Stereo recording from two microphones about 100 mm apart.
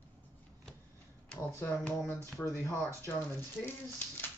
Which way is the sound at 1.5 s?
20° left (ahead or behind).